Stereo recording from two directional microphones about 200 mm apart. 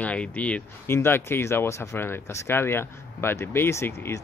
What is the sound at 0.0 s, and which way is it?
Speech, 5° left (ahead or behind).